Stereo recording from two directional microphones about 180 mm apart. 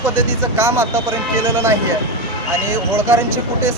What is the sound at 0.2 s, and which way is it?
Speech, 15° right (ahead or behind).